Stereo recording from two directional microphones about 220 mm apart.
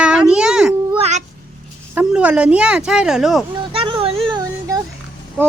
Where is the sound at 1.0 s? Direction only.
30° right (ahead or behind).